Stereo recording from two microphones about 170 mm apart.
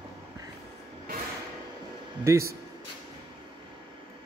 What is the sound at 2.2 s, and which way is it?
Speech, 15° right (ahead or behind).